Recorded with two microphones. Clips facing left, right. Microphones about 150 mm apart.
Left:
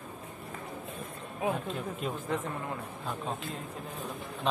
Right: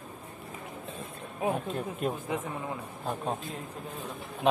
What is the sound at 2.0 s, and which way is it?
Speech, 50° right (ahead or behind).